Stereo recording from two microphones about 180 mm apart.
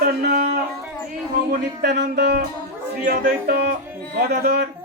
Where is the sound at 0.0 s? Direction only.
60° right (ahead or behind).